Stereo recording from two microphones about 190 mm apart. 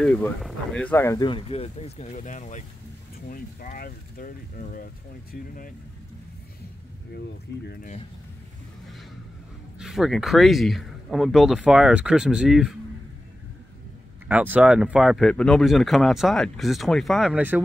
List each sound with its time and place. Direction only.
0.0 s speech: 5° left (ahead or behind); by 5.8 s 45° left (ahead or behind)
7.2 s speech: 60° left (ahead or behind)
9.8 s speech: centre (ahead or behind)
14.2 s speech: 10° right (ahead or behind)